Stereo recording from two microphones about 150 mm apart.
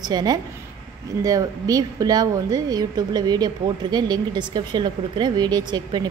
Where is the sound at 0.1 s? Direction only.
25° right (ahead or behind).